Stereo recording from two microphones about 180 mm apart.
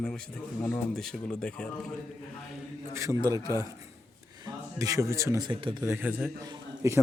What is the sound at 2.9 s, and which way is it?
A man's voice, 20° right (ahead or behind).